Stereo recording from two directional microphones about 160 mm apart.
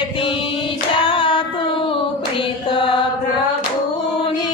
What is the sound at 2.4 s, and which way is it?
Mantra, 30° left (ahead or behind).